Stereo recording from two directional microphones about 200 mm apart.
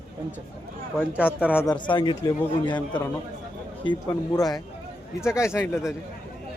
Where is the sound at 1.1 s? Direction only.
5° right (ahead or behind).